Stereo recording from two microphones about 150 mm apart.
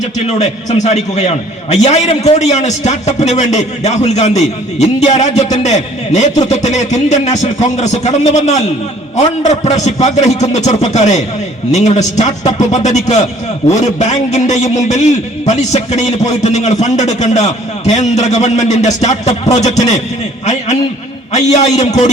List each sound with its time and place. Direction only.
0.3 s a man's voice: 50° left (ahead or behind)
20.4 s a sound: 50° left (ahead or behind)
21.3 s a man's voice: 55° left (ahead or behind)